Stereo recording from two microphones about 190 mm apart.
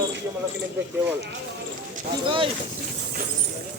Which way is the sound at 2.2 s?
25° right (ahead or behind).